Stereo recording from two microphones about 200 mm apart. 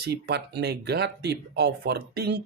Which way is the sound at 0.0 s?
55° right (ahead or behind).